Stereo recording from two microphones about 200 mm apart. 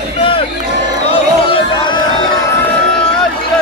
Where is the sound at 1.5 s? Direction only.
25° left (ahead or behind).